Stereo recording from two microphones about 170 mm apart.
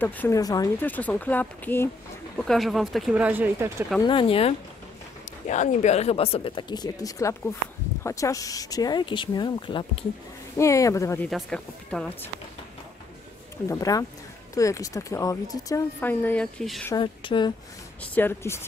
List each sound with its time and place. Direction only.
0.0 s speech: 10° left (ahead or behind)
0.4 s speech: 20° left (ahead or behind)
0.8 s speech: 10° left (ahead or behind); by 3.7 s 10° right (ahead or behind)
4.0 s speech: 30° left (ahead or behind)
5.5 s speech: 45° left (ahead or behind); by 11.2 s 15° left (ahead or behind)
11.2 s speech: 5° left (ahead or behind)
13.7 s speech: 20° left (ahead or behind); by 16.8 s 5° left (ahead or behind)
16.9 s speech: 30° left (ahead or behind)
18.1 s speech: 15° left (ahead or behind)